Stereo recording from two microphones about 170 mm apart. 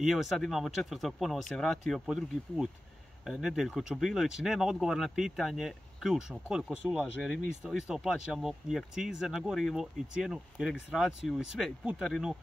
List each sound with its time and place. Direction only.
0.0 s speech: centre (ahead or behind)